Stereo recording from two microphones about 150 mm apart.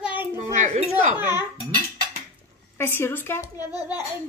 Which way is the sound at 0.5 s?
50° right (ahead or behind).